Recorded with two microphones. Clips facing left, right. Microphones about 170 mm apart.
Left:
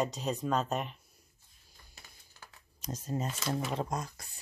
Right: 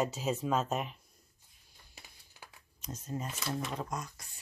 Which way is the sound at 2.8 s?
35° left (ahead or behind).